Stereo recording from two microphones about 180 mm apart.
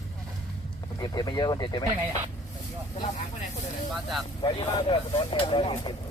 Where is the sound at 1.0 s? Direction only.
25° left (ahead or behind).